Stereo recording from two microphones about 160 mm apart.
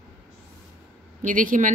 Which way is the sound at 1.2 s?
55° right (ahead or behind).